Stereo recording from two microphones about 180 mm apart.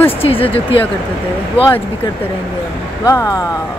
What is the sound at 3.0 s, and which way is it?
Speech, 15° left (ahead or behind).